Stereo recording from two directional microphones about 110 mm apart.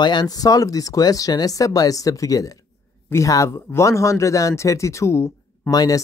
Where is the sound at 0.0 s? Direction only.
40° left (ahead or behind).